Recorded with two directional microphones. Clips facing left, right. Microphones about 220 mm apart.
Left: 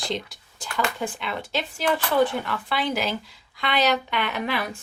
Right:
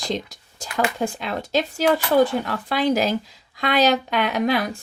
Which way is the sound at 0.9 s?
40° right (ahead or behind).